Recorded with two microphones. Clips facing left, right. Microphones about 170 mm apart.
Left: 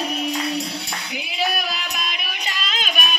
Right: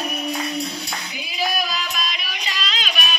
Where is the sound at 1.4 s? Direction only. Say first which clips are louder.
Right 1 dB; 60° left (ahead or behind).